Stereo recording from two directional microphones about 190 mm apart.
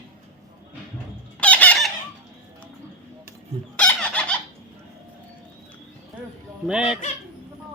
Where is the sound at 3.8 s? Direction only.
5° left (ahead or behind).